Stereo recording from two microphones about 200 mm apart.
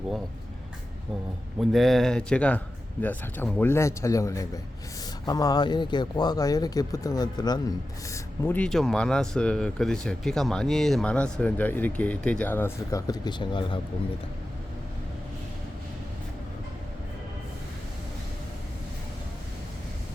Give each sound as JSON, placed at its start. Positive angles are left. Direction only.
{"t": 1.5, "sound": "a man's voice", "side_deg": 0}
{"t": 8.1, "sound": "speech", "side_deg": 10}